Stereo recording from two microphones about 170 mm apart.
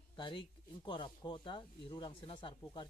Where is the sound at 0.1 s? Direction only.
30° left (ahead or behind).